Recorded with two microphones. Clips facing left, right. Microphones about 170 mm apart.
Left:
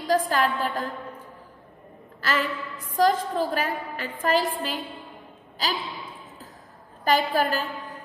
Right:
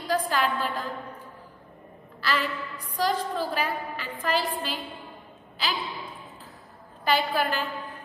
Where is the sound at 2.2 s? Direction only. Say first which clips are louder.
Left 2 dB; 45° left (ahead or behind).